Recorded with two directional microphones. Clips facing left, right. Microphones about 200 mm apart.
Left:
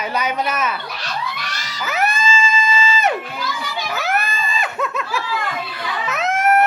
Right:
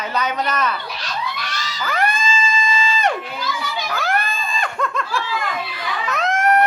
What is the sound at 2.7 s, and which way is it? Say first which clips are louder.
Music: even; 5° left (ahead or behind).